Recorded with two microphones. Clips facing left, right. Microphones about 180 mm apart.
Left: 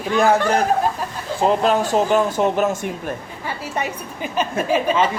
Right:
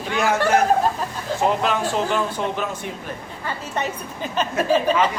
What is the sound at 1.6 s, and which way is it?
A man's voice, 40° left (ahead or behind).